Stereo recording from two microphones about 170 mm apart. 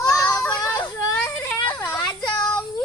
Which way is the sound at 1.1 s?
5° left (ahead or behind).